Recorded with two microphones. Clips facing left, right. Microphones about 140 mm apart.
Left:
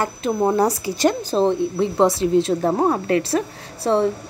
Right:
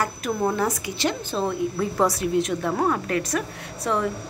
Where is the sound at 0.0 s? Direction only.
25° left (ahead or behind).